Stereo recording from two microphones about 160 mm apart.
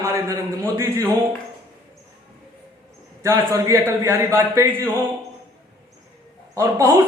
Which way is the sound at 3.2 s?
20° right (ahead or behind).